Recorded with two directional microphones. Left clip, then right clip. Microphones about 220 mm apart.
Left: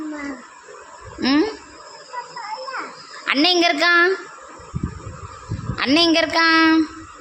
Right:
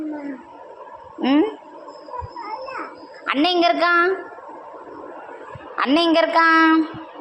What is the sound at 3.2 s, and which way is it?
Speech, 10° left (ahead or behind).